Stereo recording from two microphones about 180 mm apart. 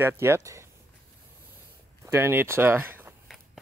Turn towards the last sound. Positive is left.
turn(degrees=-10)  # may be behind; listen again after turning